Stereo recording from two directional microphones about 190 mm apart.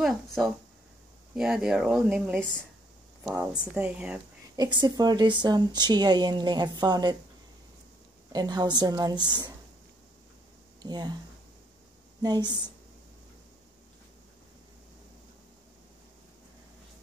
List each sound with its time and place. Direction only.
0.0 s speech: centre (ahead or behind)
3.7 s speech: 10° right (ahead or behind)
4.6 s a woman's voice: 20° right (ahead or behind)
8.3 s a woman's voice: 20° right (ahead or behind)
10.8 s speech: 20° right (ahead or behind)
12.2 s a woman's voice: 20° right (ahead or behind)